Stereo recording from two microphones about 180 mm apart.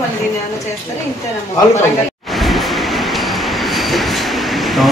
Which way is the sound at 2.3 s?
Centre (ahead or behind).